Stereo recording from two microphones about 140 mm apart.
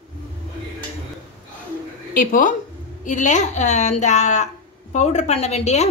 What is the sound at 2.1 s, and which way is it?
Speech, 75° left (ahead or behind).